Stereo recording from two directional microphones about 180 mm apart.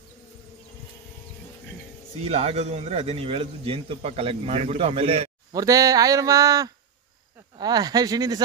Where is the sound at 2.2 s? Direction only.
35° right (ahead or behind).